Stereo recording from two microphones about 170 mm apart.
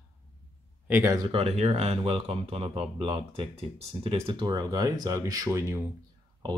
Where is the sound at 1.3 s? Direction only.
35° right (ahead or behind); by 5.7 s 15° right (ahead or behind).